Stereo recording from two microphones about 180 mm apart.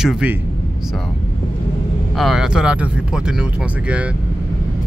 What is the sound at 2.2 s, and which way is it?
Speech, centre (ahead or behind).